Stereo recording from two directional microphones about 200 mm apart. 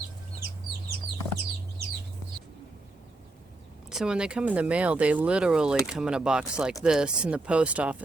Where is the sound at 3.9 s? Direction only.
5° right (ahead or behind).